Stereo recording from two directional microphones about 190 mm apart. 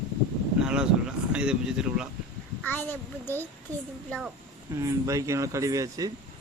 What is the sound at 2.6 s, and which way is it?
Speech, 10° left (ahead or behind).